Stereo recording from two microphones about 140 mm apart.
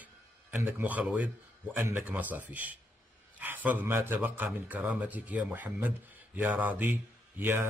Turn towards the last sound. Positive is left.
turn(degrees=-15)  # may be behind; listen again after turning